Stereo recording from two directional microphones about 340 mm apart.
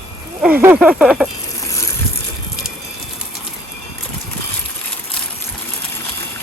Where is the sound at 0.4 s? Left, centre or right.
Centre.